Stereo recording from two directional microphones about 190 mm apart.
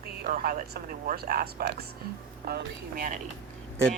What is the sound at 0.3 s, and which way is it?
Speech, 45° right (ahead or behind).